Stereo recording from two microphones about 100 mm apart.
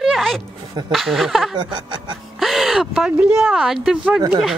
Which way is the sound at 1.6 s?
50° right (ahead or behind).